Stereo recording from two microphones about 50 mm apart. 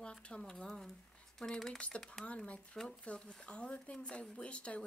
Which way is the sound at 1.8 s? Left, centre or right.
Centre.